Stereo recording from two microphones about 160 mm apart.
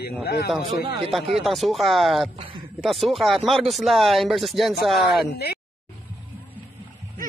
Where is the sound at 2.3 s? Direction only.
35° right (ahead or behind).